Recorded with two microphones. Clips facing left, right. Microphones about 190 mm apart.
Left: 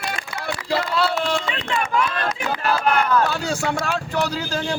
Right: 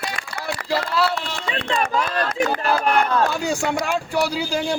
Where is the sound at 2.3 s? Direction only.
40° right (ahead or behind).